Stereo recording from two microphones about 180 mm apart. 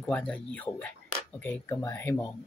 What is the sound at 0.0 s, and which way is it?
Speech, 5° left (ahead or behind).